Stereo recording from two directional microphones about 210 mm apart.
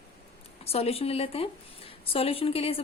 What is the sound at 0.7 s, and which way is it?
Speech, 30° left (ahead or behind).